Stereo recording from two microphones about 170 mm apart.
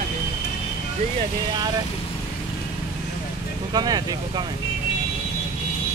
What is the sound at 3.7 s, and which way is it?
Speech, 25° right (ahead or behind).